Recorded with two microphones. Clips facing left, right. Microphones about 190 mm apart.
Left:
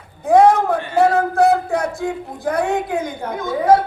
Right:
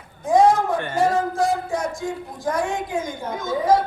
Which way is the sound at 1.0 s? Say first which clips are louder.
Left 6 dB; 60° left (ahead or behind).